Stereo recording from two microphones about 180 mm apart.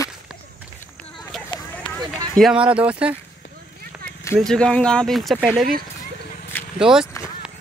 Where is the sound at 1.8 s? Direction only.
5° left (ahead or behind).